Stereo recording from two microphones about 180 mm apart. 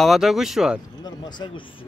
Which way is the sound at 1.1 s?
25° left (ahead or behind).